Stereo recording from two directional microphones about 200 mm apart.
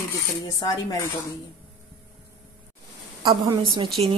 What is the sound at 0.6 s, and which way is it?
Speech, 20° left (ahead or behind).